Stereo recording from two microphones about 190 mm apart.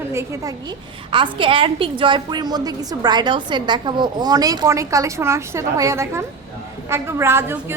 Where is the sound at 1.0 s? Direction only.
25° right (ahead or behind).